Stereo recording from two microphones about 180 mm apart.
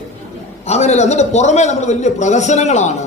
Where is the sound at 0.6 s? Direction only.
40° left (ahead or behind).